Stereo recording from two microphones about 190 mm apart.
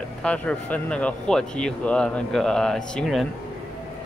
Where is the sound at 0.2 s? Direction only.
5° left (ahead or behind).